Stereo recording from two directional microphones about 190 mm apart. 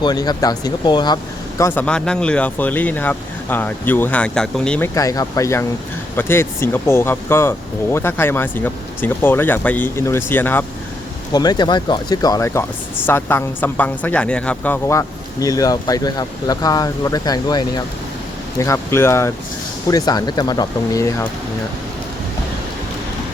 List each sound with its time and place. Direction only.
0.0 s speech: 20° left (ahead or behind); by 4.9 s 5° left (ahead or behind)
4.9 s speech: 20° left (ahead or behind)
11.3 s speech: 20° left (ahead or behind)